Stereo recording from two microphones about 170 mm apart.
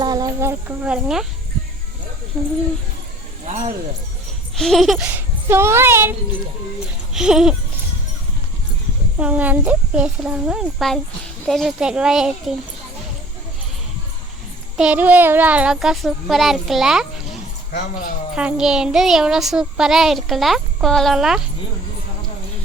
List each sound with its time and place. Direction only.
0.0 s speech: 25° right (ahead or behind); by 1.3 s 5° right (ahead or behind)
3.4 s speech: 45° right (ahead or behind)
4.5 s speech: centre (ahead or behind)
5.0 s speech: 10° right (ahead or behind)
7.1 s speech: 5° right (ahead or behind)
9.1 s speech: 10° right (ahead or behind)
14.8 s speech: 10° right (ahead or behind)
18.3 s speech: 5° right (ahead or behind)